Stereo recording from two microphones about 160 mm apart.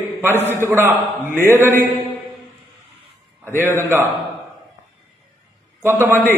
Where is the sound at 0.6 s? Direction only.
15° right (ahead or behind).